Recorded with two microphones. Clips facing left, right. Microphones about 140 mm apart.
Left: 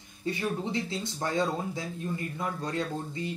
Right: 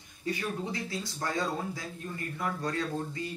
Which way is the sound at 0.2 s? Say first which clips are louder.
Left 3 dB; 25° left (ahead or behind).